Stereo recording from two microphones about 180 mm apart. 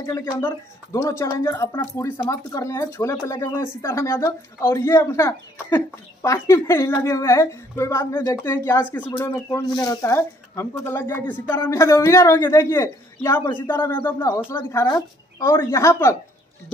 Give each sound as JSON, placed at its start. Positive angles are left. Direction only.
{"t": 0.0, "sound": "speech", "side_deg": 15}